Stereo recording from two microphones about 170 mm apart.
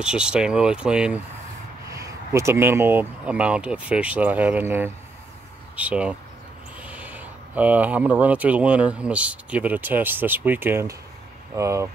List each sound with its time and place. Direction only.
0.0 s speech: 5° right (ahead or behind)
1.9 s speech: 15° right (ahead or behind)